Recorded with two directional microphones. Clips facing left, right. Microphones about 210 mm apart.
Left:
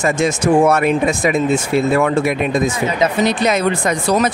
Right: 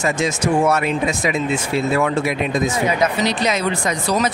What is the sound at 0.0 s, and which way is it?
Speech, 55° left (ahead or behind).